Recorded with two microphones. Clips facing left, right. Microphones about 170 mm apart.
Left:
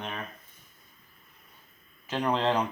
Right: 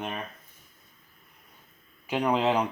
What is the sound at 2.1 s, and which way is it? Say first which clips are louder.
Speech: right 2 dB; 10° right (ahead or behind).